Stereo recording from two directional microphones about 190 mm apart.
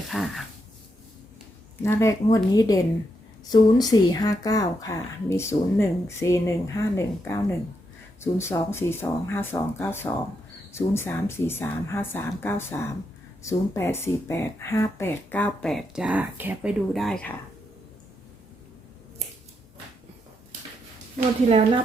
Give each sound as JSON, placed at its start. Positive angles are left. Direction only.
{"t": 0.1, "sound": "speech", "side_deg": 0}
{"t": 1.8, "sound": "speech", "side_deg": 15}